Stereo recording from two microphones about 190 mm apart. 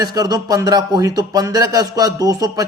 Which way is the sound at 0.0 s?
20° right (ahead or behind).